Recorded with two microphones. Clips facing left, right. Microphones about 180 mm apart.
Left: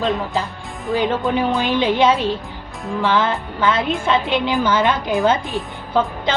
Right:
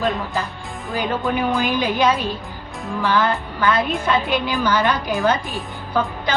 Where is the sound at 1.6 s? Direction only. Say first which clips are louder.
Left 4 dB; 25° left (ahead or behind).